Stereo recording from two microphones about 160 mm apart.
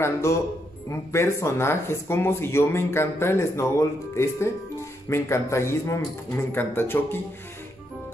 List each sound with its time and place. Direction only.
0.0 s speech: 15° left (ahead or behind)